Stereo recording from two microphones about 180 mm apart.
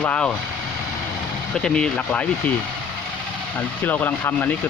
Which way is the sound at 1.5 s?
5° left (ahead or behind).